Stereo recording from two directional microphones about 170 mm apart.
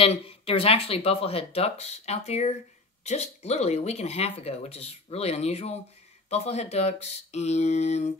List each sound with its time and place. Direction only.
0.0 s speech: 35° left (ahead or behind)